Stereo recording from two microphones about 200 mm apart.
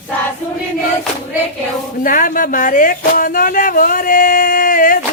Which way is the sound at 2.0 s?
45° left (ahead or behind).